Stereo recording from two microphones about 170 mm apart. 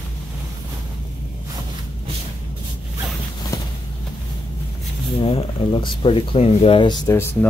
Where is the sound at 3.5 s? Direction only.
20° left (ahead or behind).